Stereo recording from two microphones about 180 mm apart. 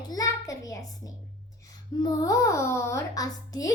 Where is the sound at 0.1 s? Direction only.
20° left (ahead or behind).